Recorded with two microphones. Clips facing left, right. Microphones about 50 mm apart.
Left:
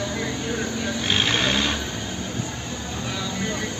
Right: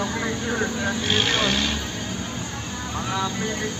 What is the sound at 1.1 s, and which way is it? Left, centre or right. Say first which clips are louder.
Vehicle: left 1 dB; left.